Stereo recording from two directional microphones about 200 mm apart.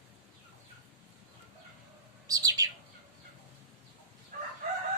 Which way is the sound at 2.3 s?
15° right (ahead or behind).